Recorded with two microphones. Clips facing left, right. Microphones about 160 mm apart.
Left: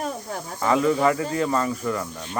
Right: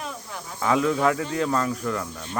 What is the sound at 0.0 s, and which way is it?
Snake, 45° left (ahead or behind).